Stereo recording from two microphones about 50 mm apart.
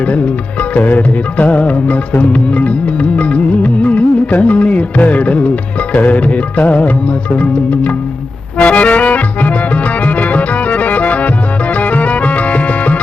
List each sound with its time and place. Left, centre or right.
0.6 s music: left